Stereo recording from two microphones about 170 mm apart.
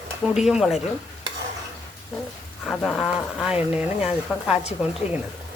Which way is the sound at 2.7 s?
5° left (ahead or behind).